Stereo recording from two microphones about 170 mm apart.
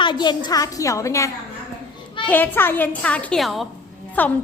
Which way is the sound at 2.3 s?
10° left (ahead or behind).